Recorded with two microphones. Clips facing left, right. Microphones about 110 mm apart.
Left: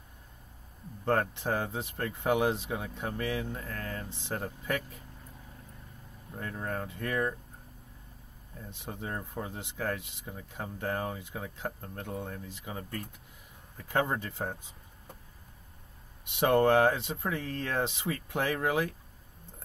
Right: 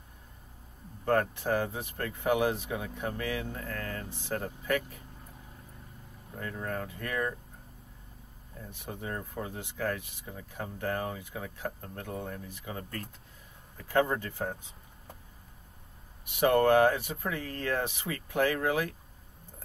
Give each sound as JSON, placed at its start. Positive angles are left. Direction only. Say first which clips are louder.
{"t": 1.0, "sound": "speech", "louder": "right 1 dB", "side_deg": 20}
{"t": 6.4, "sound": "speech", "louder": "even", "side_deg": 20}
{"t": 8.6, "sound": "speech", "louder": "even", "side_deg": 20}
{"t": 16.3, "sound": "speech", "louder": "right 1 dB", "side_deg": 20}